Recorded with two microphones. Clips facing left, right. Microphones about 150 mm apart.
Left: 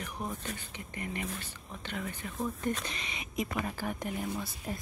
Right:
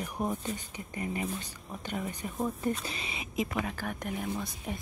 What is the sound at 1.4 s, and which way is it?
Speech, 10° right (ahead or behind).